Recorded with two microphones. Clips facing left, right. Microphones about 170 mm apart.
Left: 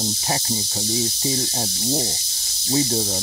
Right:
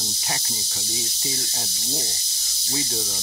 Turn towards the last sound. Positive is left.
turn(degrees=35)  # may be behind; listen again after turning